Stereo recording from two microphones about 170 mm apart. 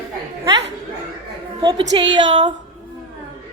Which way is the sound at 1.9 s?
30° right (ahead or behind).